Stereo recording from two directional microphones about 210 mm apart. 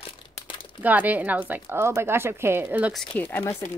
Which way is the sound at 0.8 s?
10° right (ahead or behind).